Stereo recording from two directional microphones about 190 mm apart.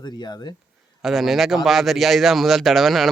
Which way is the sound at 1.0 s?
Centre (ahead or behind).